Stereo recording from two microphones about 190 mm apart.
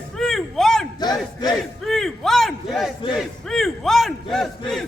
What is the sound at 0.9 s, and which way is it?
Battle cry, 20° left (ahead or behind).